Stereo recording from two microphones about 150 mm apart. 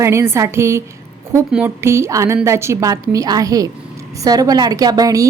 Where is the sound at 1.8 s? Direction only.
15° right (ahead or behind).